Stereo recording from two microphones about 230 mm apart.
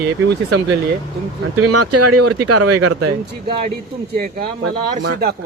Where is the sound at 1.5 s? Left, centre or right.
Right.